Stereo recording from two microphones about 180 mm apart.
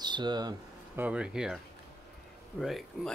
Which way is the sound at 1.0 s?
5° right (ahead or behind).